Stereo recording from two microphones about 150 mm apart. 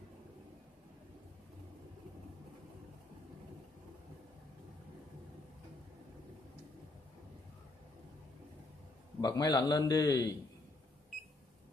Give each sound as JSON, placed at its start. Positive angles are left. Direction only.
{"t": 9.2, "sound": "a man's voice", "side_deg": 25}